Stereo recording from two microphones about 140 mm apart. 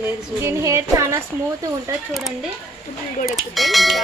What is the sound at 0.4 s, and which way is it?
Speech, 20° right (ahead or behind).